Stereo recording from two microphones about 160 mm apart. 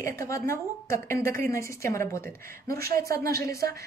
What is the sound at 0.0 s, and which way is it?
A woman's voice, 20° left (ahead or behind).